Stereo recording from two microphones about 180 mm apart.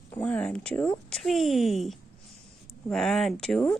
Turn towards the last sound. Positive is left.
turn(degrees=5)  # may be behind; listen again after turning